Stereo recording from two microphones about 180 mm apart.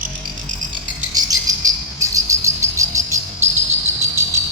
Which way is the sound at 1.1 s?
20° right (ahead or behind).